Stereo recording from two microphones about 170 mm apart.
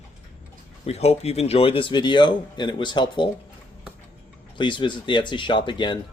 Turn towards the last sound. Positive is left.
turn(degrees=25)  # may be behind; listen again after turning